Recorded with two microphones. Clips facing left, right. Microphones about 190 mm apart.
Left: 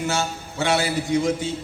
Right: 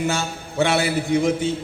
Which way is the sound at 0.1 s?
55° right (ahead or behind).